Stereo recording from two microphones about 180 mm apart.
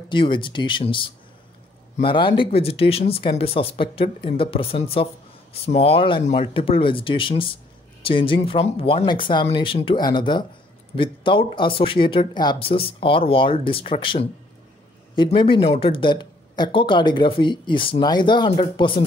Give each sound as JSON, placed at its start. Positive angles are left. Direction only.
{"t": 0.1, "sound": "speech", "side_deg": 25}